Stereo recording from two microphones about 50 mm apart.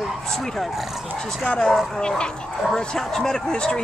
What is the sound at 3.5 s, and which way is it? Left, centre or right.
Speech, centre.